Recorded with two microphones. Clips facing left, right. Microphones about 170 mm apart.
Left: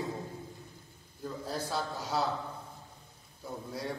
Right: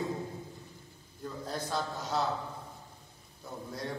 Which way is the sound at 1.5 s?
5° left (ahead or behind).